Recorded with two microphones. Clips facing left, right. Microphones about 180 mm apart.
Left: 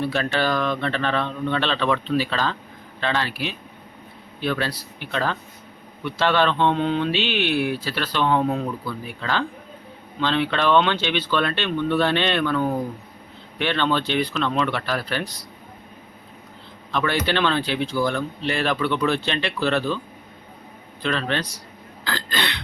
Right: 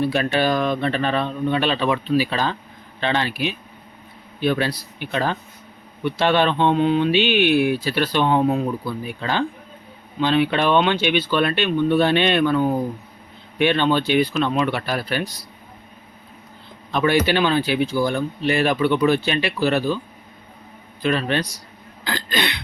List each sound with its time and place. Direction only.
0.1 s speech: 15° right (ahead or behind)
16.9 s speech: 15° right (ahead or behind)
21.0 s speech: 15° right (ahead or behind)
22.0 s throat clearing: 15° right (ahead or behind)